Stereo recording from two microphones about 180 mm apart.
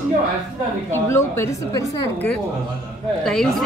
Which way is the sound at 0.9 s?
15° left (ahead or behind).